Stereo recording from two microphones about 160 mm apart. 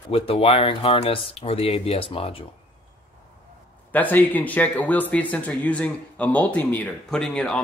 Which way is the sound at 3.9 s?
10° left (ahead or behind).